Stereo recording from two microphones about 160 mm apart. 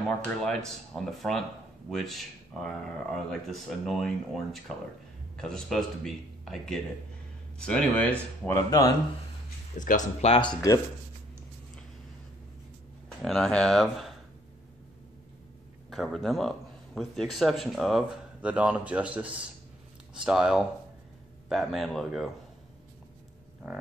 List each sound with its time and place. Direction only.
0.2 s speech: 5° left (ahead or behind); by 8.9 s 20° left (ahead or behind)
9.8 s speech: 50° left (ahead or behind)
13.2 s speech: 5° left (ahead or behind)
15.9 s speech: centre (ahead or behind)